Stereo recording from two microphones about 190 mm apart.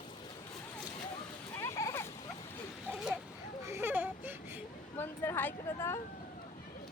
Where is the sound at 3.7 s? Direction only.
15° right (ahead or behind).